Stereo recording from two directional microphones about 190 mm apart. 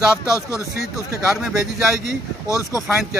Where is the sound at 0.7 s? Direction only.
55° left (ahead or behind).